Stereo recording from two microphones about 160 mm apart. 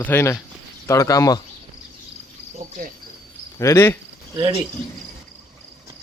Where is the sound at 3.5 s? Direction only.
15° left (ahead or behind).